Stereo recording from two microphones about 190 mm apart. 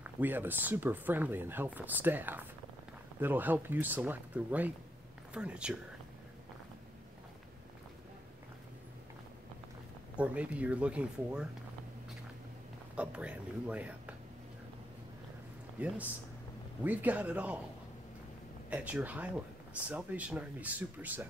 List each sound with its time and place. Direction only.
0.0 s speech: 10° right (ahead or behind)
10.1 s speech: 5° right (ahead or behind)
12.9 s speech: 5° right (ahead or behind)
15.8 s speech: 5° right (ahead or behind)
18.7 s speech: 5° right (ahead or behind)